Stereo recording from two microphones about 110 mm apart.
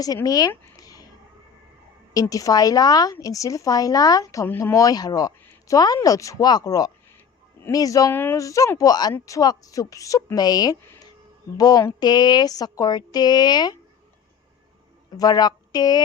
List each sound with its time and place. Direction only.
0.3 s speech: 35° left (ahead or behind)
0.8 s a sound: 35° left (ahead or behind)
2.3 s speech: 35° left (ahead or behind)
8.1 s speech: 20° left (ahead or behind)
8.4 s speech: 30° left (ahead or behind)
15.2 s a woman's voice: 40° left (ahead or behind)